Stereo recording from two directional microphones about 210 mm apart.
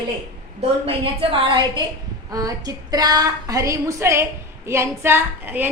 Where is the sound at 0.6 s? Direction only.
25° right (ahead or behind).